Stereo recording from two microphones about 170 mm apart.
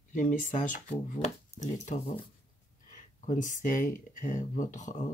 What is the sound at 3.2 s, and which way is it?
Speech, 50° left (ahead or behind).